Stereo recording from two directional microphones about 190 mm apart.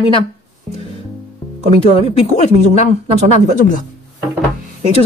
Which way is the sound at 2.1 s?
35° left (ahead or behind).